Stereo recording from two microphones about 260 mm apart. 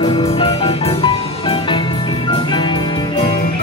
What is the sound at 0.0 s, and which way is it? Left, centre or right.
Music, left.